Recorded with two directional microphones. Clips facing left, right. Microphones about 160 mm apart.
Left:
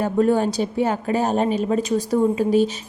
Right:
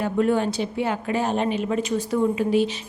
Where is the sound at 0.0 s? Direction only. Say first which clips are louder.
Left 3 dB; 40° left (ahead or behind).